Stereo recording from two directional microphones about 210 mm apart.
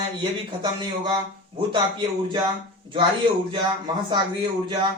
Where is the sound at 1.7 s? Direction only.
20° right (ahead or behind).